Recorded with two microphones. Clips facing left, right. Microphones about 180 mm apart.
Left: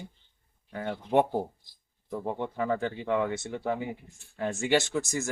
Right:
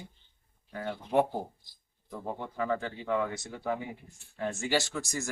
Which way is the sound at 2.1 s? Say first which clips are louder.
Left 5 dB; 20° left (ahead or behind).